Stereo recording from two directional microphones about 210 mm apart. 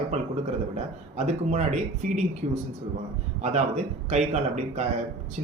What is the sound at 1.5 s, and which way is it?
Speech, 35° right (ahead or behind).